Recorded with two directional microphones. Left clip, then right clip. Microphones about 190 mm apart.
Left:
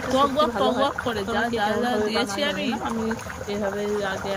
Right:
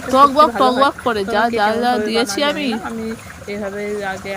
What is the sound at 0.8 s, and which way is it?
Speech, 20° right (ahead or behind).